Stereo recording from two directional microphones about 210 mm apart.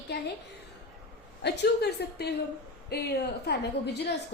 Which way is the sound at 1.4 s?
50° left (ahead or behind).